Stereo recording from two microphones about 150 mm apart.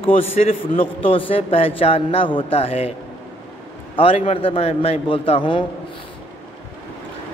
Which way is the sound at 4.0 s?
35° left (ahead or behind).